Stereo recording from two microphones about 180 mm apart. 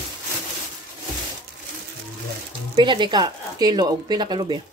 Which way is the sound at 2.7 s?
25° right (ahead or behind).